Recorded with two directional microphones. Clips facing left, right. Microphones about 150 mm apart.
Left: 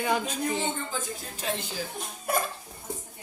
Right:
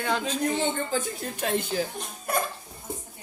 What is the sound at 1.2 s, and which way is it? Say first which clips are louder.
Speech: right 5 dB; 55° right (ahead or behind).